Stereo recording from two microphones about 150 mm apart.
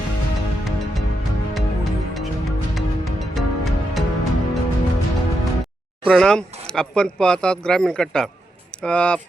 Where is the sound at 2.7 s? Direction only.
Centre (ahead or behind).